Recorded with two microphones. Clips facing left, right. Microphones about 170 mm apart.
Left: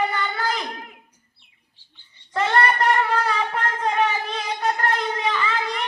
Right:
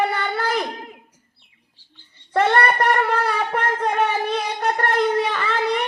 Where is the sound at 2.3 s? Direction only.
55° right (ahead or behind).